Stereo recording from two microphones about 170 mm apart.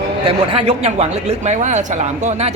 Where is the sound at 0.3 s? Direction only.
35° right (ahead or behind).